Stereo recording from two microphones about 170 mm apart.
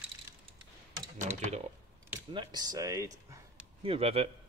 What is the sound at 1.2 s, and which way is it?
Speech, 45° right (ahead or behind).